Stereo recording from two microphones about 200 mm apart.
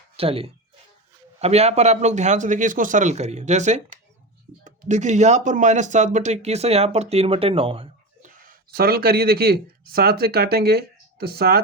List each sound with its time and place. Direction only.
0.2 s speech: 30° right (ahead or behind)
8.4 s speech: 50° right (ahead or behind)